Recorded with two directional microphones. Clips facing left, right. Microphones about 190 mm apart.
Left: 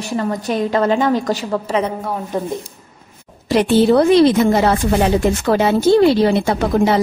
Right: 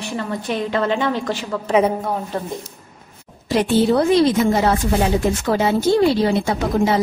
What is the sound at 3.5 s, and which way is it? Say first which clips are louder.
A woman's voice: left 4 dB; 75° left (ahead or behind).